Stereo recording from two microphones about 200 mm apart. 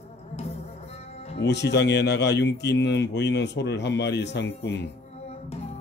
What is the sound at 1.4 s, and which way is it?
Speech, 60° left (ahead or behind).